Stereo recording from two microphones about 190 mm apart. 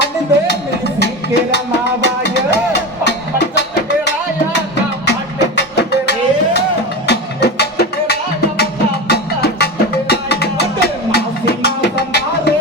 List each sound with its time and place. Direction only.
0.0 s music: 60° left (ahead or behind)
5.4 s music: 65° left (ahead or behind)